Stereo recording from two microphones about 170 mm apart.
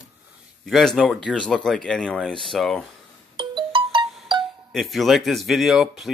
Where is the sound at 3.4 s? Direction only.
30° right (ahead or behind).